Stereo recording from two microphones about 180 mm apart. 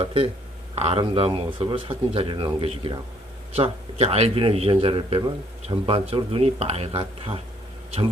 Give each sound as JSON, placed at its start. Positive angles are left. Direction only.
{"t": 0.0, "sound": "a man's voice", "side_deg": -30}